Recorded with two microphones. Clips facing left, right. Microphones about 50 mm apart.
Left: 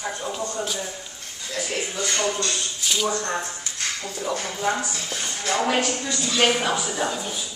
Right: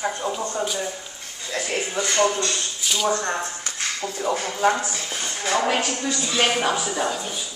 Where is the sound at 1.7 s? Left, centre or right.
Right.